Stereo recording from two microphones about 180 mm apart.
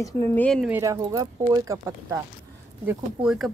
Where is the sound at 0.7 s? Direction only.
15° right (ahead or behind).